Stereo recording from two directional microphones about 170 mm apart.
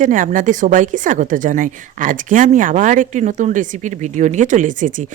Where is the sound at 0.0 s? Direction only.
50° right (ahead or behind).